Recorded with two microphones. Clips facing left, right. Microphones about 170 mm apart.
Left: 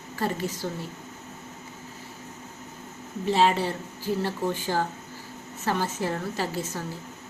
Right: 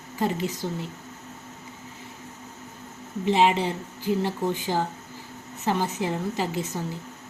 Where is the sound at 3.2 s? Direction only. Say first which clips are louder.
Right 1 dB; 15° right (ahead or behind).